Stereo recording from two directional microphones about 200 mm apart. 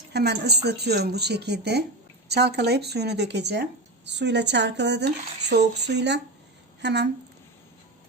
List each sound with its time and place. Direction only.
0.1 s speech: 55° right (ahead or behind)